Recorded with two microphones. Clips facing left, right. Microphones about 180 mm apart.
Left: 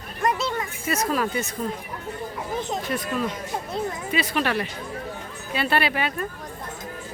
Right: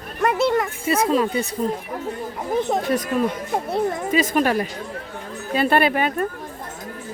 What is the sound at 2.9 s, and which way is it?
A woman's voice, 45° right (ahead or behind).